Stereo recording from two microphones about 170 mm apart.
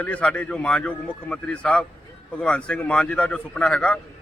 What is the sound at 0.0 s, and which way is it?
A man's voice, 10° left (ahead or behind).